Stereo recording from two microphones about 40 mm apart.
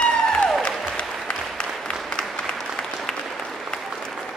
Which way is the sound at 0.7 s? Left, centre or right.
Centre.